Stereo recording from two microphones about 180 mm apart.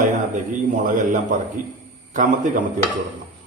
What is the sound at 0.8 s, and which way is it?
A man's voice, 45° right (ahead or behind).